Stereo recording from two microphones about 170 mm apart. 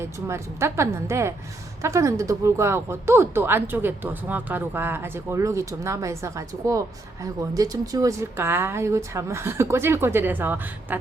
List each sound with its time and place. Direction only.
0.0 s speech: 15° right (ahead or behind)